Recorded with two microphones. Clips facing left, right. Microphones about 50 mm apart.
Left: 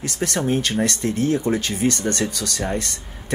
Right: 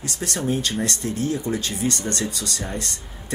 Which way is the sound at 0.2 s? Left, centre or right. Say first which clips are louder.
Left 3 dB; left.